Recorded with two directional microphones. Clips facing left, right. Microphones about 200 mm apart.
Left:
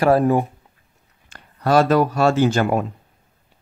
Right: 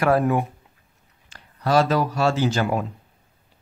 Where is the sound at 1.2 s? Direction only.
55° left (ahead or behind).